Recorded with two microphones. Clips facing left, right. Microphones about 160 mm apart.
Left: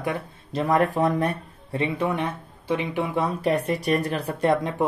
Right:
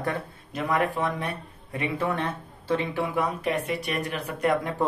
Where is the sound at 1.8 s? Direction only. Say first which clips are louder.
Left 2 dB; 15° left (ahead or behind); by 4.5 s 35° left (ahead or behind).